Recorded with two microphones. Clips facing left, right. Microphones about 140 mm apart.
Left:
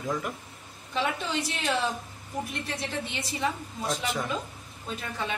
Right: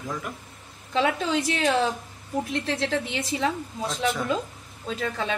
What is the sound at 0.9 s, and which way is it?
A woman's voice, 90° right.